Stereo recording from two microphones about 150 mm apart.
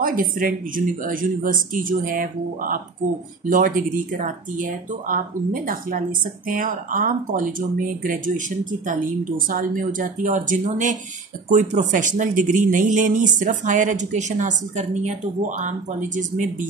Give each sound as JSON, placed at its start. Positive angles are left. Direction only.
{"t": 0.0, "sound": "speech", "side_deg": -70}
{"t": 9.5, "sound": "speech", "side_deg": -65}